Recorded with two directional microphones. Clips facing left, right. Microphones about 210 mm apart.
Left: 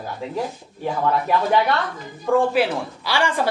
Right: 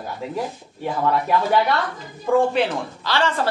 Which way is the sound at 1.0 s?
Centre (ahead or behind).